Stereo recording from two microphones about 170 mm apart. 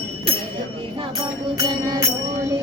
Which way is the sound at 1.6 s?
25° right (ahead or behind).